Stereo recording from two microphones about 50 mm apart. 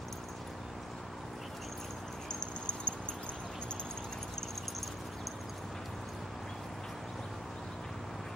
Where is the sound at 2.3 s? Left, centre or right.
Centre.